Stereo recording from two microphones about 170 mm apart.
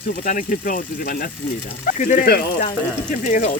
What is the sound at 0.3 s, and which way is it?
Speech, 50° left (ahead or behind).